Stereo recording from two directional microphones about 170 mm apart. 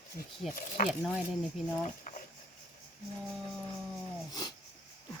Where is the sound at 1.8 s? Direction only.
50° left (ahead or behind).